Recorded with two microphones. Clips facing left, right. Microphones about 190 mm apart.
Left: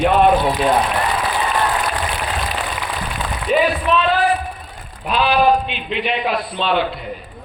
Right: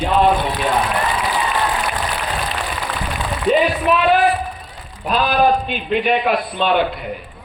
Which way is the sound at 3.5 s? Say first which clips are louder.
Right 2 dB; 35° right (ahead or behind).